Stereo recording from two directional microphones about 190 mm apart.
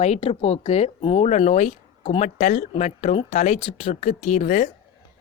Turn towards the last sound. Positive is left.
turn(degrees=35)  # may be behind; listen again after turning